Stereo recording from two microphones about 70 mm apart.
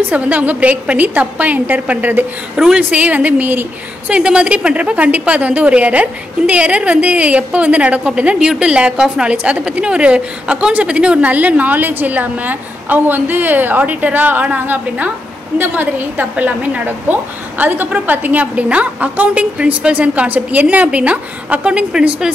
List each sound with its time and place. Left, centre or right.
0.1 s a woman's voice: right
2.5 s a woman's voice: centre